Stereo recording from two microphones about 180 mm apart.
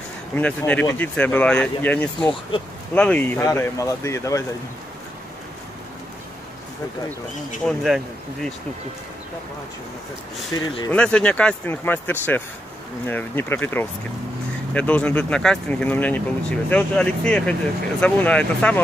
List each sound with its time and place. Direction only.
0.4 s speech: 10° left (ahead or behind)
7.6 s speech: centre (ahead or behind)
10.6 s speech: 25° left (ahead or behind)
10.9 s speech: 5° left (ahead or behind)